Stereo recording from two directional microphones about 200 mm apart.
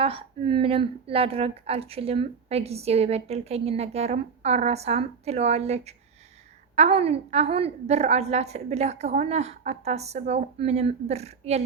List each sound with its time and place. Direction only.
0.0 s speech: 25° right (ahead or behind)